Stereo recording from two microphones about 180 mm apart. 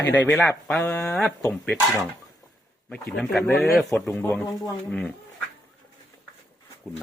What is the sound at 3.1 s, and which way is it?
Speech, centre (ahead or behind).